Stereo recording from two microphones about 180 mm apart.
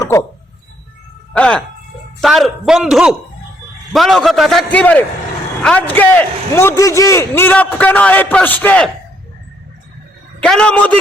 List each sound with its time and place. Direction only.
0.0 s a sound: 15° left (ahead or behind)
1.3 s a man's voice: 5° left (ahead or behind)
10.4 s a man's voice: 5° left (ahead or behind)